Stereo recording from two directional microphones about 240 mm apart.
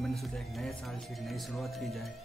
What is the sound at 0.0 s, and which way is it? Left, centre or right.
Speech, centre.